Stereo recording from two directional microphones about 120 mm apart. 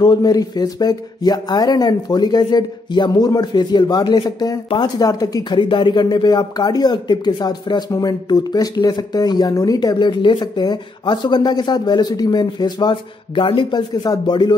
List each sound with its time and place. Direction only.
0.0 s speech: 35° left (ahead or behind)